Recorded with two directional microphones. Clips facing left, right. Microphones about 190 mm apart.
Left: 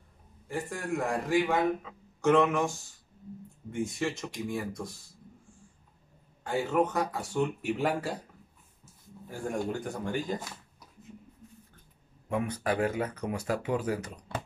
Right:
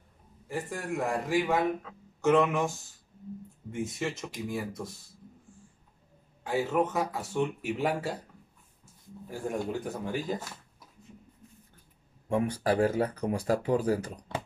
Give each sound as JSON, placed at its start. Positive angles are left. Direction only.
{"t": 0.5, "sound": "a man's voice", "side_deg": 0}
{"t": 6.4, "sound": "a man's voice", "side_deg": 0}
{"t": 9.3, "sound": "a man's voice", "side_deg": -5}
{"t": 12.3, "sound": "speech", "side_deg": -30}